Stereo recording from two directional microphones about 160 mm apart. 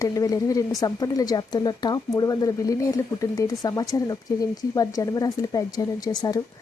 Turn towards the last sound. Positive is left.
turn(degrees=25)  # may be behind; listen again after turning